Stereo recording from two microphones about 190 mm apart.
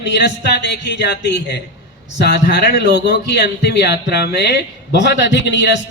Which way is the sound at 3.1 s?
60° left (ahead or behind).